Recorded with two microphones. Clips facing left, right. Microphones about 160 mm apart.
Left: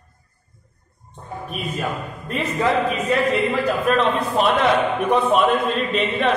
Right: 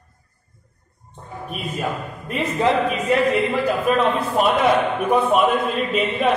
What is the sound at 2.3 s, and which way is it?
A man's voice, 15° right (ahead or behind).